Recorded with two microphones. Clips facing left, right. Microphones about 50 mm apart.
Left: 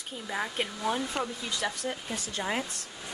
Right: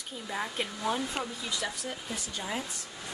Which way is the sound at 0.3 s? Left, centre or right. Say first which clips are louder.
Left 2 dB; centre.